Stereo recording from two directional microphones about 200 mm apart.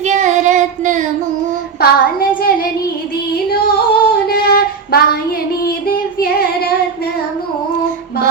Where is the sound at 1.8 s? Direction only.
50° left (ahead or behind).